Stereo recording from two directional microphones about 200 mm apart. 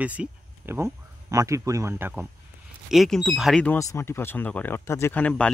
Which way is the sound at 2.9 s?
Centre (ahead or behind).